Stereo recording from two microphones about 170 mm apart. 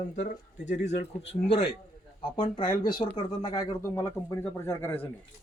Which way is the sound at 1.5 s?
35° left (ahead or behind).